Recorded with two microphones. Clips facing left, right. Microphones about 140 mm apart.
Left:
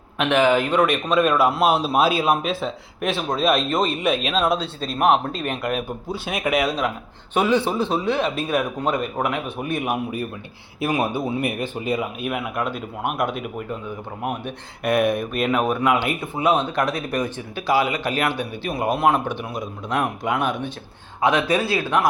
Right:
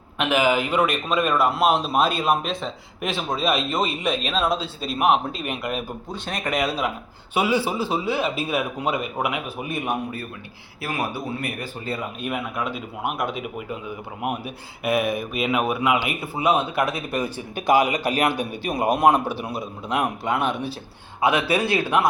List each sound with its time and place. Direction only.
0.2 s a man's voice: 5° right (ahead or behind)
10.8 s speech: 20° left (ahead or behind)
11.9 s a man's voice: centre (ahead or behind); by 22.0 s 15° right (ahead or behind)